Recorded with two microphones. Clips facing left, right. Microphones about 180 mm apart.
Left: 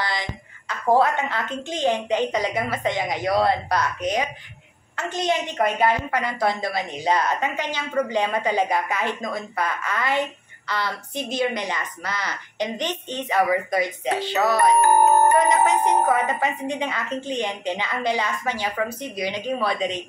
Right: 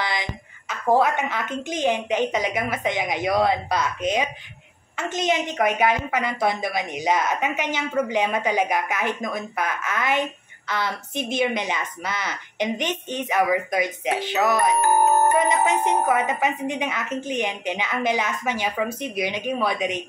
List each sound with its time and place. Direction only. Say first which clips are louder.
0.0 s a sound: even; 15° right (ahead or behind)
0.9 s a woman's voice: even; 15° right (ahead or behind)
8.0 s a woman's voice: left 1 dB; 5° right (ahead or behind)
14.8 s music: left 2 dB; 55° left (ahead or behind)
16.1 s a woman's voice: even; 20° right (ahead or behind)